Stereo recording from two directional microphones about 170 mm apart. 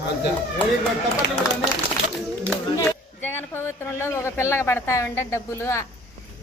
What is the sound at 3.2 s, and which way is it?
Speech, 15° left (ahead or behind).